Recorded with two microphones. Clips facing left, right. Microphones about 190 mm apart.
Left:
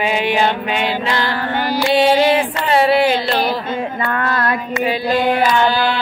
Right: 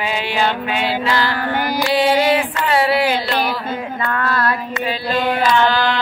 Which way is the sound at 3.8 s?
20° left (ahead or behind).